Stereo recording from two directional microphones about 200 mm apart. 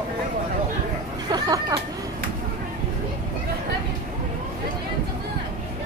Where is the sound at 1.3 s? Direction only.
20° right (ahead or behind).